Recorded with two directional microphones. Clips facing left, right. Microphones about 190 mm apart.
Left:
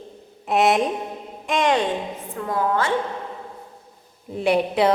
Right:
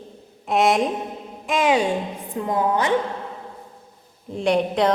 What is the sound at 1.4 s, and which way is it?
Music, centre (ahead or behind).